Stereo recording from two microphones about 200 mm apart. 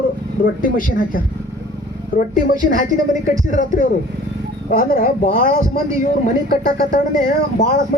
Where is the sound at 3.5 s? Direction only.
40° left (ahead or behind).